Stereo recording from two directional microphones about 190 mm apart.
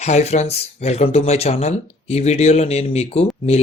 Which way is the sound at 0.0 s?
35° left (ahead or behind).